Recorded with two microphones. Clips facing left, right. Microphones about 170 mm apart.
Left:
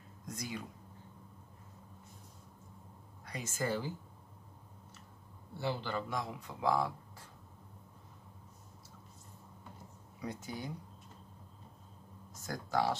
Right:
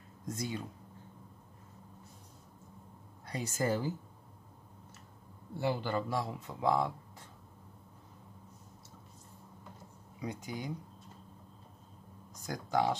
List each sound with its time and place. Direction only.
0.3 s speech: 25° right (ahead or behind)
3.3 s a man's voice: 35° right (ahead or behind)
5.6 s a man's voice: 50° right (ahead or behind); by 6.9 s 25° right (ahead or behind)
10.2 s speech: 15° right (ahead or behind)
12.4 s speech: 15° right (ahead or behind)